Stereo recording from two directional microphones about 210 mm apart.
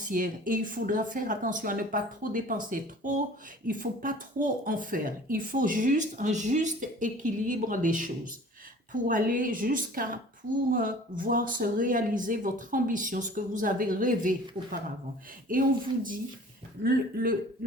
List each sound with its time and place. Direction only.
0.0 s speech: 40° right (ahead or behind)
16.8 s speech: 45° right (ahead or behind)